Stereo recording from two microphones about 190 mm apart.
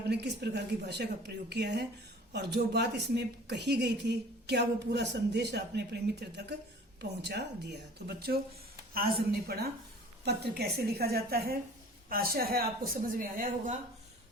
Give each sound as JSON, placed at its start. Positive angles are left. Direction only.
{"t": 0.1, "sound": "a woman's voice", "side_deg": -60}